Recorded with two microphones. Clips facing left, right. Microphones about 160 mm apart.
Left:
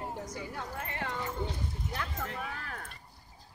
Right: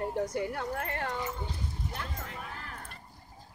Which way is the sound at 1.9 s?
90° left.